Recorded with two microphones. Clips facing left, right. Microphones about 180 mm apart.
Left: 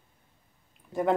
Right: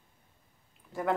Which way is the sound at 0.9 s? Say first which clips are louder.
Left 5 dB; 20° left (ahead or behind).